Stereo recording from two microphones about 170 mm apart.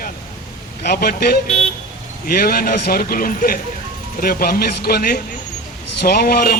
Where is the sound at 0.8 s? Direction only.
65° left (ahead or behind).